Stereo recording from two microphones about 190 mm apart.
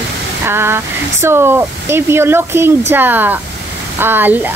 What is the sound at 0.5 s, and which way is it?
Speech, 10° right (ahead or behind).